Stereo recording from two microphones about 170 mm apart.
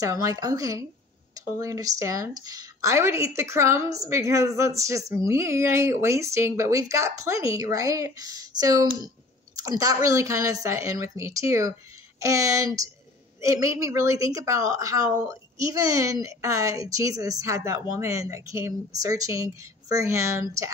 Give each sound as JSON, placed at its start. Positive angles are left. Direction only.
{"t": 0.0, "sound": "a woman's voice", "side_deg": -20}